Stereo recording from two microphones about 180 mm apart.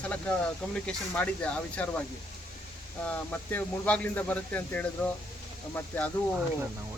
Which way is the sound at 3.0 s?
10° left (ahead or behind).